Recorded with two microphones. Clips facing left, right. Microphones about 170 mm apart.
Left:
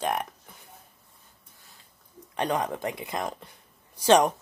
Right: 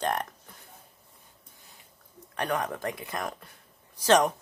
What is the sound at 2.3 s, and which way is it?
Speech, 20° left (ahead or behind).